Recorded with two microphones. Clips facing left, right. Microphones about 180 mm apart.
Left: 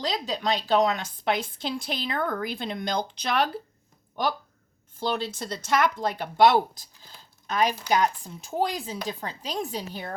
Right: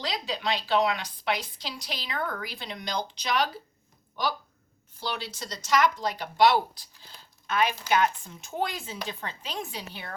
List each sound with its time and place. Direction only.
0.1 s a woman's voice: 45° left (ahead or behind)
4.9 s a woman's voice: 50° left (ahead or behind)
7.4 s speech: 40° left (ahead or behind)